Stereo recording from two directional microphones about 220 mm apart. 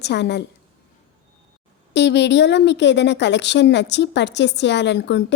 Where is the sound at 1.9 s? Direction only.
50° left (ahead or behind).